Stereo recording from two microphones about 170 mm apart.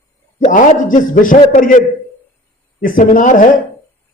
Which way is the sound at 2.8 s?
50° left (ahead or behind).